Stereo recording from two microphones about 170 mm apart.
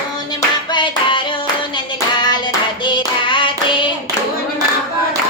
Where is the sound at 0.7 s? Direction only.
30° left (ahead or behind).